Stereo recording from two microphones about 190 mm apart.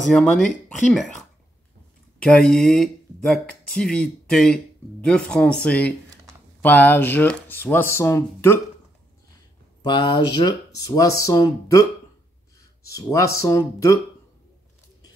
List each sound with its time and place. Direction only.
0.0 s speech: 5° left (ahead or behind)
2.2 s speech: 5° left (ahead or behind)
9.8 s speech: 25° left (ahead or behind)